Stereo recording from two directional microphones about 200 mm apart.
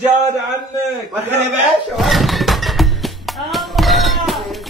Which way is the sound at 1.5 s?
Centre (ahead or behind).